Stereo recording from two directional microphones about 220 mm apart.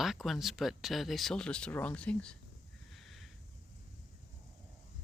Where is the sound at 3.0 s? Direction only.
Centre (ahead or behind).